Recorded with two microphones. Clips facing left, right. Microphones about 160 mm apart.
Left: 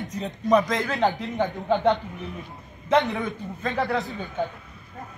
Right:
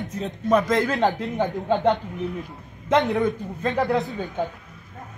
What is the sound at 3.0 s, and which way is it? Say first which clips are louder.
Speech: right 4 dB; centre (ahead or behind).